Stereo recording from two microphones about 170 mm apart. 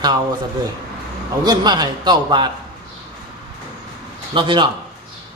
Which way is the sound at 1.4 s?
25° right (ahead or behind).